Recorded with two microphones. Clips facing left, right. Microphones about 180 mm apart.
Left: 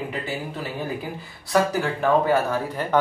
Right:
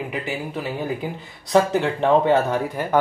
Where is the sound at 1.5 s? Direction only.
25° right (ahead or behind).